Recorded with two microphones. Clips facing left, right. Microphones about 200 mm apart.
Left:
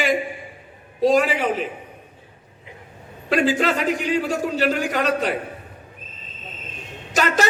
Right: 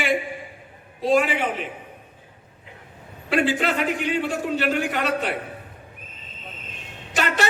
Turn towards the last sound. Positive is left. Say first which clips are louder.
# left 3 dB
turn(degrees=40)  # may be behind; listen again after turning